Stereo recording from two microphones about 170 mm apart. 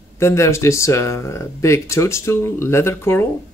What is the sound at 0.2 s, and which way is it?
Speech, 15° left (ahead or behind).